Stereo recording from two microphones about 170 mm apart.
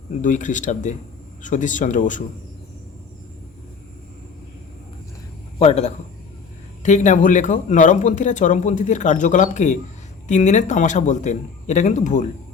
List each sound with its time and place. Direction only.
0.2 s a man's voice: 45° left (ahead or behind)
5.5 s a man's voice: 35° left (ahead or behind)